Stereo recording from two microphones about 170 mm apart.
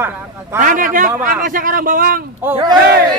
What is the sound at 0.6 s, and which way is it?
A man's voice, 50° right (ahead or behind).